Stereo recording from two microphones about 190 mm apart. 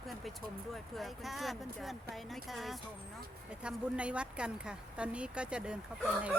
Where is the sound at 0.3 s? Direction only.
Centre (ahead or behind).